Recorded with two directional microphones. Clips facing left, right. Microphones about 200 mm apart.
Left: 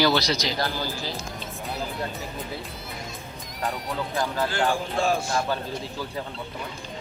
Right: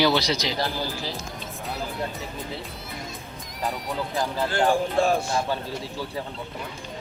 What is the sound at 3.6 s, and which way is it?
Music, centre (ahead or behind).